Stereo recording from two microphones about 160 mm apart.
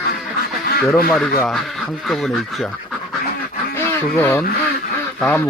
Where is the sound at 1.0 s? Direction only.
5° left (ahead or behind).